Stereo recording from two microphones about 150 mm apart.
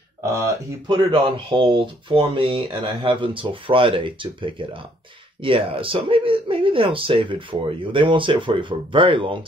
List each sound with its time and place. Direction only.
0.2 s speech: 20° right (ahead or behind)
0.8 s speech: 30° right (ahead or behind)